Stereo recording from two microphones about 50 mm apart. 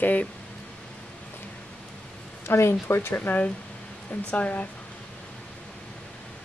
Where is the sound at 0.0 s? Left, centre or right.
Left.